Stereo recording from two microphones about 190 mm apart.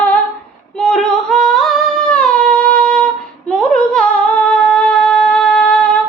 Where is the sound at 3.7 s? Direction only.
5° left (ahead or behind).